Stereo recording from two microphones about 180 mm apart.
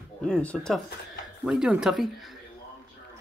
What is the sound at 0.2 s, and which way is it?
Speech, 5° left (ahead or behind).